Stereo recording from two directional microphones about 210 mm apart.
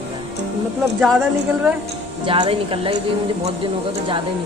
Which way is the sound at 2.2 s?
25° right (ahead or behind).